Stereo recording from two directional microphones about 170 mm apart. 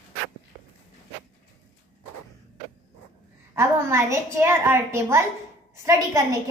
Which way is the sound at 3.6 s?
15° right (ahead or behind).